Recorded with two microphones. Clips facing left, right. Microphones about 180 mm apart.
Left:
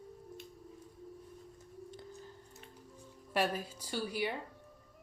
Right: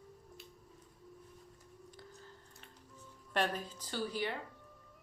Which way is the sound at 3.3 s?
10° left (ahead or behind).